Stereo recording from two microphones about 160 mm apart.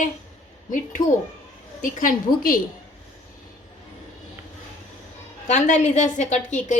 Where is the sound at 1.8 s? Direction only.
55° left (ahead or behind).